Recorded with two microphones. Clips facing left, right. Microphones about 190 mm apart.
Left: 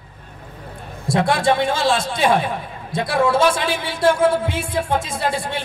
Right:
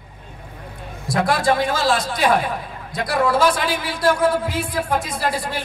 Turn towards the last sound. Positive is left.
turn(degrees=25)  # may be behind; listen again after turning